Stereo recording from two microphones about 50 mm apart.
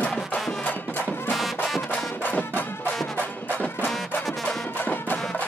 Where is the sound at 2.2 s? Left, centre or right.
Left.